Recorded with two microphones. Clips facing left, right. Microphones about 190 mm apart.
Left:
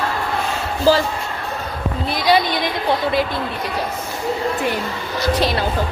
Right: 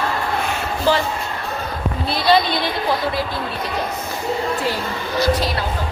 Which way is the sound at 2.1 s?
15° left (ahead or behind).